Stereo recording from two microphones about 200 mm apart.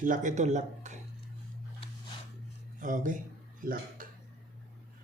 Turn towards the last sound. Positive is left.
turn(degrees=-45)  # may be behind; listen again after turning